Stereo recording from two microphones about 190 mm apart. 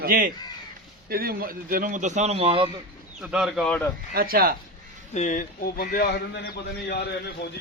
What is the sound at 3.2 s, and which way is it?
Speech, 5° right (ahead or behind).